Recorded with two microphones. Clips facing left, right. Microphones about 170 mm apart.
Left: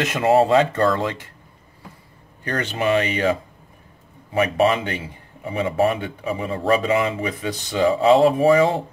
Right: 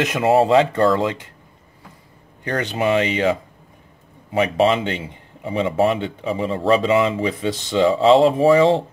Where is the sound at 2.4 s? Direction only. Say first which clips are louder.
Right 2 dB; 15° right (ahead or behind).